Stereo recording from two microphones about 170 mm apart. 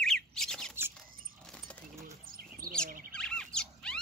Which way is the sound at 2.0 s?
55° right (ahead or behind).